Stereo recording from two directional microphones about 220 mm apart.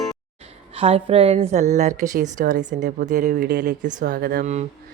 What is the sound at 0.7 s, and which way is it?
A woman's voice, 25° right (ahead or behind).